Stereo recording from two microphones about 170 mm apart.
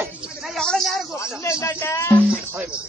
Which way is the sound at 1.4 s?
15° left (ahead or behind).